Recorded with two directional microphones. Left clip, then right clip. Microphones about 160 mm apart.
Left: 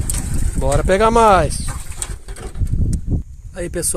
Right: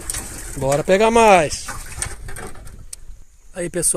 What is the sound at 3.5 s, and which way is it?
Speech, centre (ahead or behind).